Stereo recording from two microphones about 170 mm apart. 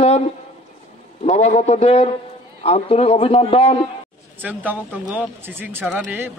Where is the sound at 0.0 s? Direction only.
40° left (ahead or behind).